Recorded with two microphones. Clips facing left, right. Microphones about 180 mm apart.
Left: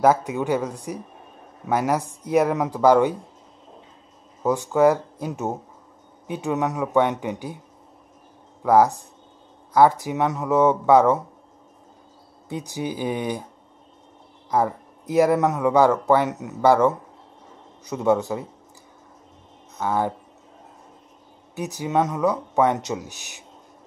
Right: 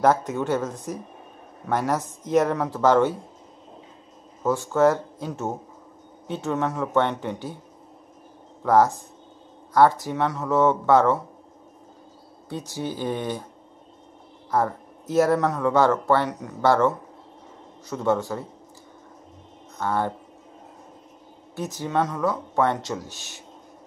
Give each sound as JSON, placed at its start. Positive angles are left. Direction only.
{"t": 0.0, "sound": "speech", "side_deg": 10}
{"t": 4.4, "sound": "speech", "side_deg": 15}
{"t": 8.6, "sound": "speech", "side_deg": 10}
{"t": 12.4, "sound": "speech", "side_deg": 15}
{"t": 14.5, "sound": "speech", "side_deg": 15}
{"t": 19.8, "sound": "speech", "side_deg": 10}
{"t": 21.5, "sound": "speech", "side_deg": 15}